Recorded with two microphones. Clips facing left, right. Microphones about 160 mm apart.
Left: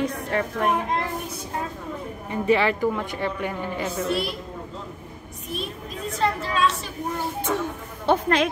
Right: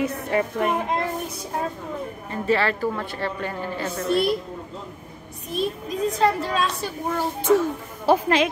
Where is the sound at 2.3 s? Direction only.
15° left (ahead or behind).